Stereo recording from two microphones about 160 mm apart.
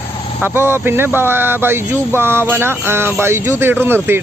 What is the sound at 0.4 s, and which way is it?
Speech, 15° right (ahead or behind).